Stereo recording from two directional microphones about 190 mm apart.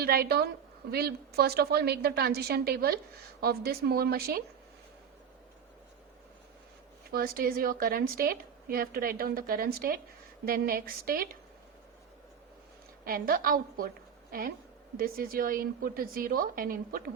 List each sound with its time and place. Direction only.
0.0 s a woman's voice: 50° right (ahead or behind)
7.1 s a woman's voice: 50° right (ahead or behind)
13.1 s a woman's voice: 50° right (ahead or behind)